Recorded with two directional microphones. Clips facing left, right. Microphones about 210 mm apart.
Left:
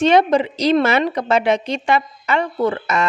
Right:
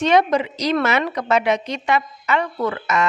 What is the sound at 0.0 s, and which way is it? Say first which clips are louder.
A woman's voice: left 3 dB; 30° left (ahead or behind).